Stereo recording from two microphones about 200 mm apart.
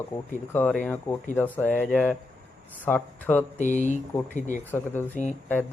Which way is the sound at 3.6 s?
40° left (ahead or behind).